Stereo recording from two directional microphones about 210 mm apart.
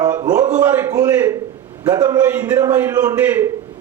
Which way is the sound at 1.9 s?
20° right (ahead or behind).